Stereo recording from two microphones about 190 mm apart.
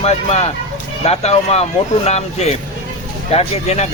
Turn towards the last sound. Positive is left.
turn(degrees=35)  # may be behind; listen again after turning